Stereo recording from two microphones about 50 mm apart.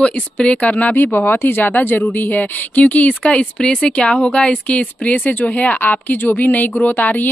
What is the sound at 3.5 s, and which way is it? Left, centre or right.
A woman's voice, centre.